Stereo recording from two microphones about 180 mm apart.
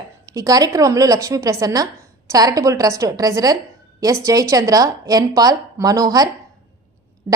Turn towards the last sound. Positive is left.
turn(degrees=-20)  # may be behind; listen again after turning